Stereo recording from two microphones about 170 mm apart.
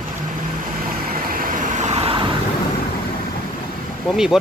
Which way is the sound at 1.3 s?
55° right (ahead or behind).